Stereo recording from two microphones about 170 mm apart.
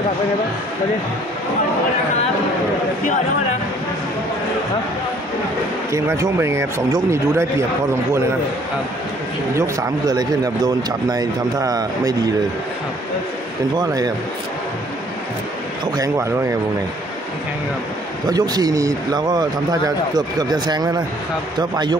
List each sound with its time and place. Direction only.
5.9 s speech: 20° right (ahead or behind)
9.6 s a man's voice: 20° right (ahead or behind)
13.7 s a man's voice: 25° right (ahead or behind)
16.0 s speech: 15° right (ahead or behind)
18.3 s a man's voice: 25° right (ahead or behind)